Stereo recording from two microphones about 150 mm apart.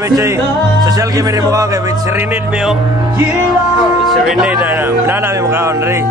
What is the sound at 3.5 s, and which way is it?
Speech, centre (ahead or behind).